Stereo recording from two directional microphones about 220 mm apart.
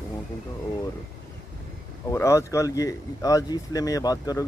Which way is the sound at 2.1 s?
15° left (ahead or behind).